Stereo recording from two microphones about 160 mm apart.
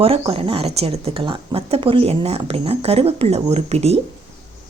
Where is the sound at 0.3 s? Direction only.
35° right (ahead or behind).